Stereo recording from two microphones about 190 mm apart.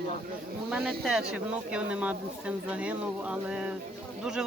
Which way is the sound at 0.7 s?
Centre (ahead or behind).